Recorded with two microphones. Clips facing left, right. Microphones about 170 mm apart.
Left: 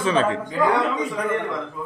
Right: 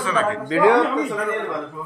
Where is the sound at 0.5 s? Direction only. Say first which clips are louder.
Right 6 dB; 90° right.